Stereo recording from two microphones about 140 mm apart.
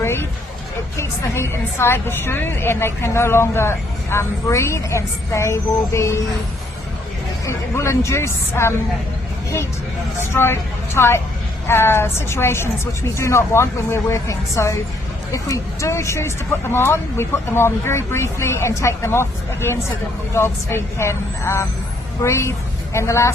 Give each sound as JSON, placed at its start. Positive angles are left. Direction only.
{"t": 0.0, "sound": "a sound", "side_deg": 20}
{"t": 0.9, "sound": "a woman's voice", "side_deg": 20}
{"t": 7.4, "sound": "a woman's voice", "side_deg": 20}
{"t": 10.2, "sound": "a woman's voice", "side_deg": 15}